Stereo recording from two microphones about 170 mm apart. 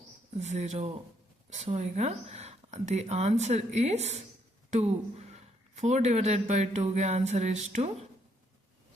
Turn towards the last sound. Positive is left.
turn(degrees=-40)  # may be behind; listen again after turning